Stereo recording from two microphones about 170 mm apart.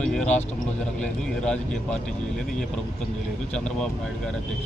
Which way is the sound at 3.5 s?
5° left (ahead or behind).